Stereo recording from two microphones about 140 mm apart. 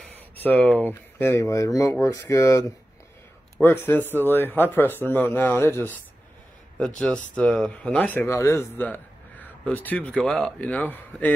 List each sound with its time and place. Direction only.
0.1 s a man's voice: 10° left (ahead or behind)
7.3 s a man's voice: 5° left (ahead or behind)